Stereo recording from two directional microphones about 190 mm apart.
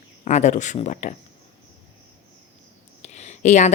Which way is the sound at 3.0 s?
35° left (ahead or behind).